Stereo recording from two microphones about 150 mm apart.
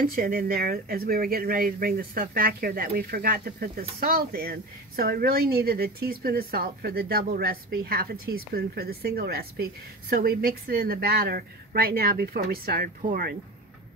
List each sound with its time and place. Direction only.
0.0 s a woman's voice: 70° right (ahead or behind)